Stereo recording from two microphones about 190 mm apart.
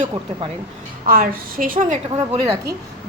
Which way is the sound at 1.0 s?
50° right (ahead or behind).